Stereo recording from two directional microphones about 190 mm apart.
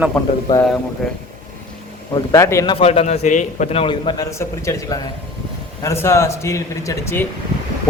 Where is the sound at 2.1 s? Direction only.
15° left (ahead or behind).